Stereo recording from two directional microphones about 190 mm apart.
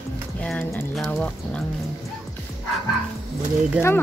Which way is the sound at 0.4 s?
5° left (ahead or behind).